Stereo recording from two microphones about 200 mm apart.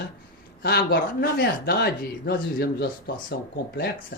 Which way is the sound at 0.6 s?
55° left (ahead or behind).